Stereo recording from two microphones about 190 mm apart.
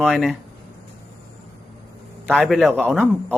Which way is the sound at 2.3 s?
Centre (ahead or behind).